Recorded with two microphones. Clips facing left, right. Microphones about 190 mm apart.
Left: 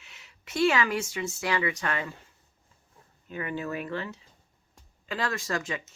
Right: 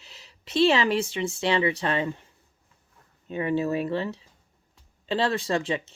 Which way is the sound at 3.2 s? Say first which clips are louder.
Right 8 dB; 25° right (ahead or behind).